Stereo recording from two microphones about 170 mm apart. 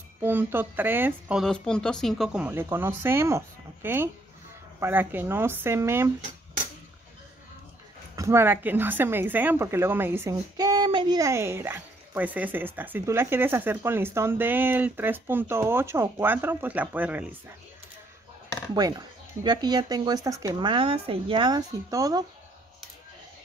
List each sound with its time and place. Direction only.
0.2 s a woman's voice: 10° right (ahead or behind)
1.4 s a woman's voice: 5° left (ahead or behind); by 6.1 s 15° right (ahead or behind)
8.2 s a woman's voice: 15° right (ahead or behind)
18.8 s speech: 20° right (ahead or behind)